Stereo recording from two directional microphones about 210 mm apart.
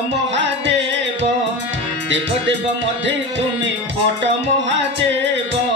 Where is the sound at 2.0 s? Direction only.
60° right (ahead or behind).